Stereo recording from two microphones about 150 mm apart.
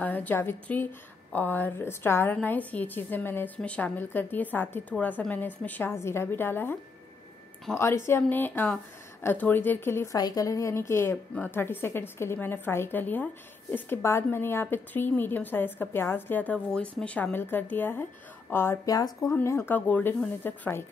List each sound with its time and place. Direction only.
0.0 s speech: 10° left (ahead or behind)